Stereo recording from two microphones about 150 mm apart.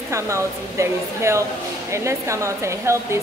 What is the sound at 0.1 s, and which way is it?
Speech, 20° right (ahead or behind).